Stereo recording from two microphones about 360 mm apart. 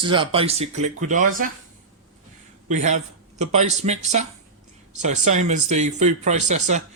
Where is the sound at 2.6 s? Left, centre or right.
Centre.